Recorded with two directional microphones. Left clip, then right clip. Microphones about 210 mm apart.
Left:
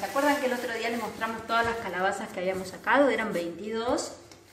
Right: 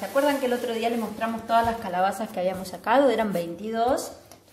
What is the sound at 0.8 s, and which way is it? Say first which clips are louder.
Speech: right 4 dB; 45° right (ahead or behind).